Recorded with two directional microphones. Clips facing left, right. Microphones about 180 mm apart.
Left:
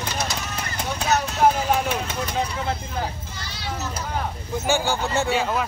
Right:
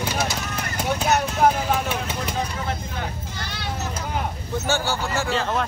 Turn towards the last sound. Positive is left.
turn(degrees=10)  # may be behind; listen again after turning